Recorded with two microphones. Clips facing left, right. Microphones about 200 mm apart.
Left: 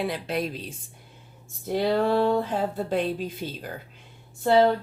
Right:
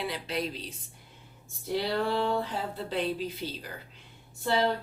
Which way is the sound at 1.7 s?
50° left (ahead or behind).